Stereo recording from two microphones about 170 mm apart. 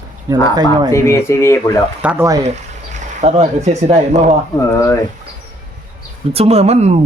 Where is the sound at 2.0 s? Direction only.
5° right (ahead or behind).